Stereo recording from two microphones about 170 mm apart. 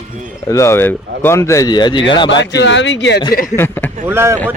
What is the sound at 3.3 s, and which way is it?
Speech, 50° left (ahead or behind).